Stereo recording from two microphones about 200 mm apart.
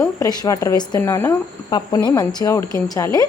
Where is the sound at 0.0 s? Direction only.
15° left (ahead or behind).